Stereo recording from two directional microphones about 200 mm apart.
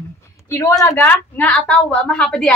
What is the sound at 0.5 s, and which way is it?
A woman's voice, 15° left (ahead or behind).